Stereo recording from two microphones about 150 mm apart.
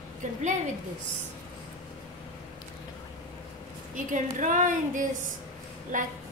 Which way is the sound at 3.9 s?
60° right (ahead or behind).